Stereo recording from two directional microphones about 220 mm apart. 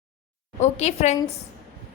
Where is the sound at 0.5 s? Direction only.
30° left (ahead or behind).